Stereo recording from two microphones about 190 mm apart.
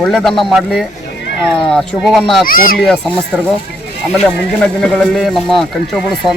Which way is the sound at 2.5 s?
50° left (ahead or behind).